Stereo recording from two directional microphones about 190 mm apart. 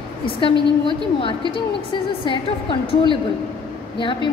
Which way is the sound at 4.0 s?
25° left (ahead or behind).